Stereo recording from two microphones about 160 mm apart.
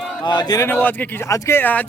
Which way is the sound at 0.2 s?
25° left (ahead or behind).